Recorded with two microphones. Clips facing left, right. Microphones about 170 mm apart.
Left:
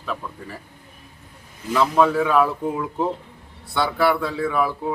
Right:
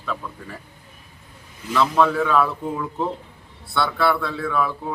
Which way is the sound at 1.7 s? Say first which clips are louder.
Left 1 dB; 10° left (ahead or behind).